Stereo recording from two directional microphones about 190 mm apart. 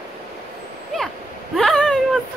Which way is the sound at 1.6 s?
5° left (ahead or behind).